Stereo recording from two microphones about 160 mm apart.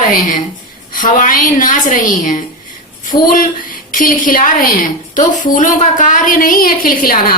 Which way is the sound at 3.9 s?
60° left (ahead or behind).